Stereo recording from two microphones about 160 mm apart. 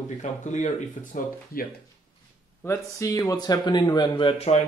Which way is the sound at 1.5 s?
65° left (ahead or behind).